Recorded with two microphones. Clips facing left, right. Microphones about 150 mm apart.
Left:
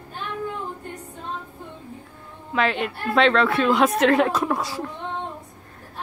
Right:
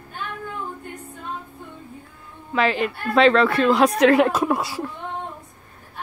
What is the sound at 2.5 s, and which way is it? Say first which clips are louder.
A woman's voice: right 2 dB; centre (ahead or behind).